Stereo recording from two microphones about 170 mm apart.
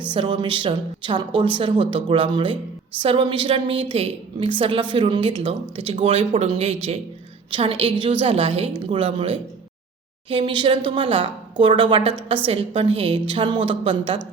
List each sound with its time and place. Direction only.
0.1 s a woman's voice: 30° right (ahead or behind)